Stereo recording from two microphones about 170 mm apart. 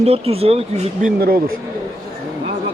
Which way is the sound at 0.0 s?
35° right (ahead or behind).